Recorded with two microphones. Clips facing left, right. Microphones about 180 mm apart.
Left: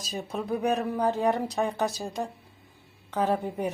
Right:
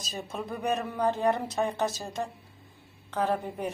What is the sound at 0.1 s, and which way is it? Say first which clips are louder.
A woman's voice: left 5 dB; 15° left (ahead or behind).